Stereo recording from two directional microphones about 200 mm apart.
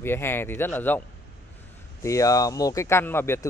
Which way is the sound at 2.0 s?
15° left (ahead or behind).